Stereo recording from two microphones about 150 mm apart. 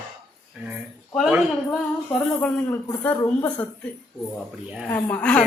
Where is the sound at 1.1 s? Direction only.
Centre (ahead or behind).